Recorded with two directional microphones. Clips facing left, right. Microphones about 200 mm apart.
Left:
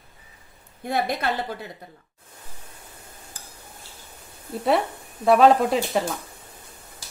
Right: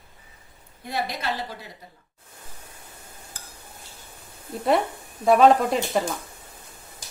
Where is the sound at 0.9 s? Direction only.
55° left (ahead or behind).